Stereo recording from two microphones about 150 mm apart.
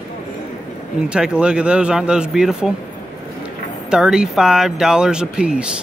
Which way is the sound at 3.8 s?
5° right (ahead or behind).